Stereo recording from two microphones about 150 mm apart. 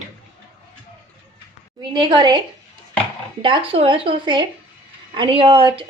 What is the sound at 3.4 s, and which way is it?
A woman's voice, 35° right (ahead or behind).